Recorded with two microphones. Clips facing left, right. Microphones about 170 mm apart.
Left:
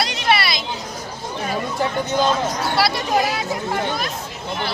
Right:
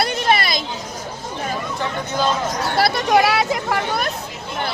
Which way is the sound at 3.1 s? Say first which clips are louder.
Right 4 dB; 80° right.